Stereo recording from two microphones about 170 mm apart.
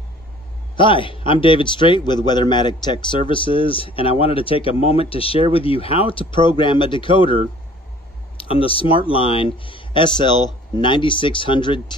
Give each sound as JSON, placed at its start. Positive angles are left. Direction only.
{"t": 0.7, "sound": "a man's voice", "side_deg": 30}
{"t": 8.4, "sound": "speech", "side_deg": 30}